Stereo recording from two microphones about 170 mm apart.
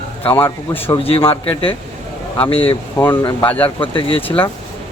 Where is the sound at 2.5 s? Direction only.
30° left (ahead or behind).